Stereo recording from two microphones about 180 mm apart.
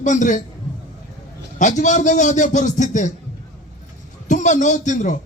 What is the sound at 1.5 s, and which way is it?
A man's voice, 45° left (ahead or behind).